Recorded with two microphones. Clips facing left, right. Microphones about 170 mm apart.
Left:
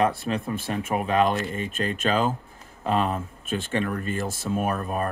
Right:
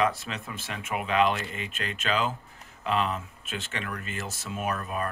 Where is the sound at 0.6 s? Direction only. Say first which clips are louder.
Left 7 dB; 45° left (ahead or behind).